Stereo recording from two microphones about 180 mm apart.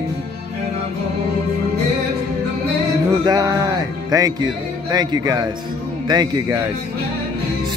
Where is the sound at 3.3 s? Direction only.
20° right (ahead or behind).